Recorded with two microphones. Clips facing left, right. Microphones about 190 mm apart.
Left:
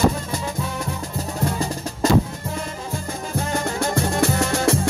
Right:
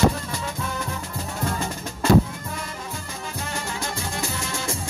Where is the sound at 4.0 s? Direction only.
65° left (ahead or behind).